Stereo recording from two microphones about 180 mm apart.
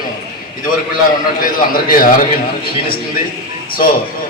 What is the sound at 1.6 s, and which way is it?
Speech, 50° left (ahead or behind).